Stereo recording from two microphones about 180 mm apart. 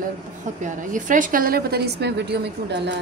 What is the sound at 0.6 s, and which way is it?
A woman's voice, 45° right (ahead or behind).